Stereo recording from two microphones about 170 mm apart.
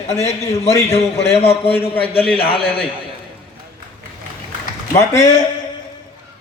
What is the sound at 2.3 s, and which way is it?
Speech, 30° left (ahead or behind).